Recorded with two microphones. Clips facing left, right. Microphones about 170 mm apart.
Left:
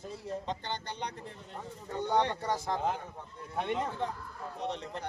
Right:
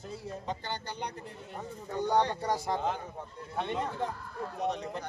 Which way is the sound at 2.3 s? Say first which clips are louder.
Right 2 dB; 15° right (ahead or behind).